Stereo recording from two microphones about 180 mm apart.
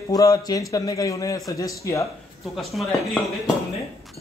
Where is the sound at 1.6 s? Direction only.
15° left (ahead or behind).